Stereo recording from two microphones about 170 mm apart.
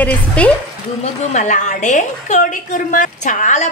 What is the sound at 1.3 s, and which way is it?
A woman's voice, 45° left (ahead or behind).